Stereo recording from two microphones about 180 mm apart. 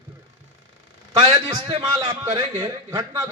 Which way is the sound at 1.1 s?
25° right (ahead or behind).